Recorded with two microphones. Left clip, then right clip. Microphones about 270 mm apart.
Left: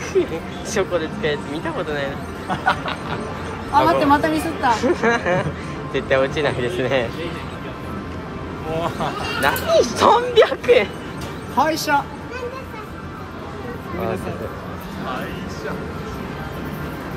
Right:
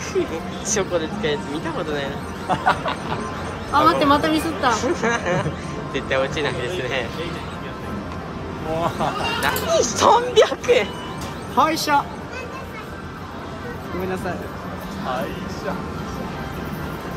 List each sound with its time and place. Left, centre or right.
0.1 s speech: centre
2.5 s snicker: right
3.8 s speech: centre
9.4 s speech: centre